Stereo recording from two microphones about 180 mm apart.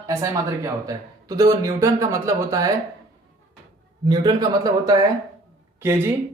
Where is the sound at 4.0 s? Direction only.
25° right (ahead or behind).